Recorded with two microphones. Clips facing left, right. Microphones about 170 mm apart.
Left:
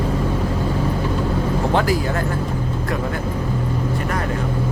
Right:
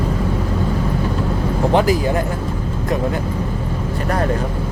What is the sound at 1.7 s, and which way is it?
Speech, 20° right (ahead or behind).